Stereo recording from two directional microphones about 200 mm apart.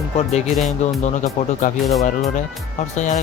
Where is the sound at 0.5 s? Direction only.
Centre (ahead or behind).